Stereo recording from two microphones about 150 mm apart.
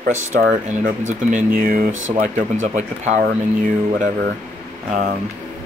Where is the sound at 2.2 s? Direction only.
60° right (ahead or behind).